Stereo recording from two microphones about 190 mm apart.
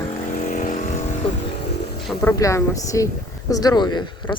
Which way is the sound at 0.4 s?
40° left (ahead or behind).